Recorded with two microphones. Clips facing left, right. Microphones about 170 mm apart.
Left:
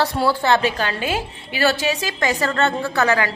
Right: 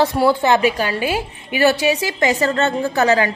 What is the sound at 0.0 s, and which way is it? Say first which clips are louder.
A woman's voice: right 4 dB; 15° right (ahead or behind).